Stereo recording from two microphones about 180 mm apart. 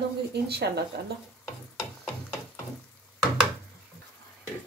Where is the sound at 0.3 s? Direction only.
65° right (ahead or behind).